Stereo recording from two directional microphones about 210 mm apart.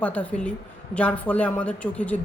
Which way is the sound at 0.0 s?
5° left (ahead or behind).